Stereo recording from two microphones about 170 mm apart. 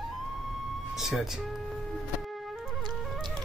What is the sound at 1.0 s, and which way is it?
Music, centre (ahead or behind).